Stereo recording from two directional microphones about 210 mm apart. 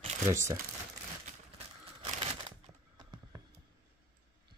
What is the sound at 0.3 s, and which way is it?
Speech, 15° right (ahead or behind).